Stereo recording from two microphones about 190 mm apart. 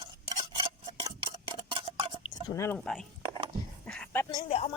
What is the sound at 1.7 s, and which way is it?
Cutlery, 30° right (ahead or behind).